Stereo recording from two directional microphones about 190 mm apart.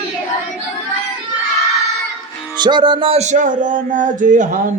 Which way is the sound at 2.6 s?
25° right (ahead or behind).